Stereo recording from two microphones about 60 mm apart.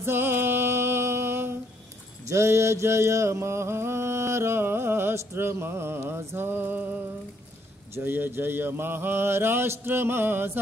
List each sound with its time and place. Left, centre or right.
0.0 s music: right
2.2 s mantra: right
7.9 s mantra: right